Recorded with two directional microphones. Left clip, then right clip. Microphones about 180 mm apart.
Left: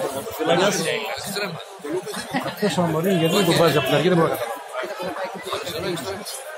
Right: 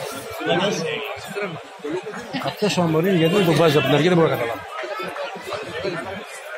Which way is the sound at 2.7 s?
60° right (ahead or behind).